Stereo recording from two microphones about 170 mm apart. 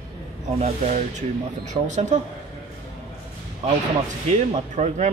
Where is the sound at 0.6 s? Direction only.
45° right (ahead or behind).